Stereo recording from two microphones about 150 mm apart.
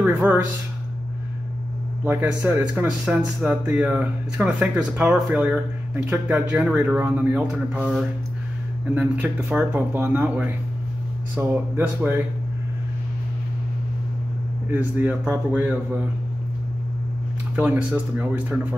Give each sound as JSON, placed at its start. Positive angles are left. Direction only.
{"t": 0.0, "sound": "speech", "side_deg": -10}
{"t": 2.0, "sound": "speech", "side_deg": -10}
{"t": 8.9, "sound": "speech", "side_deg": -10}
{"t": 14.7, "sound": "speech", "side_deg": -10}
{"t": 17.6, "sound": "speech", "side_deg": -10}